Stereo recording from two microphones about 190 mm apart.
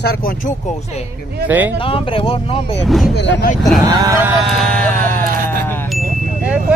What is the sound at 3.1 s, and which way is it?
Speech, 65° left (ahead or behind).